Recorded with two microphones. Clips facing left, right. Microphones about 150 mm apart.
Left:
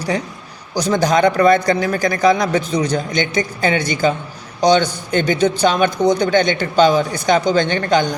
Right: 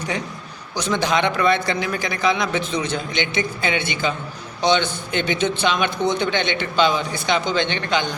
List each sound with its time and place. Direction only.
0.8 s a man's voice: 40° left (ahead or behind)